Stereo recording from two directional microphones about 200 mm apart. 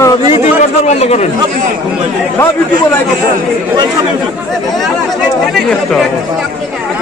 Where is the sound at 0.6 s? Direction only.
35° left (ahead or behind).